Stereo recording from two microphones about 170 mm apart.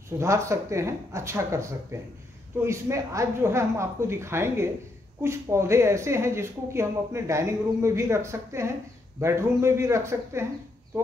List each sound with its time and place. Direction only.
0.2 s speech: 15° right (ahead or behind)